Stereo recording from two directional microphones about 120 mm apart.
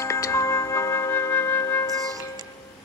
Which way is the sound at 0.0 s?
25° left (ahead or behind).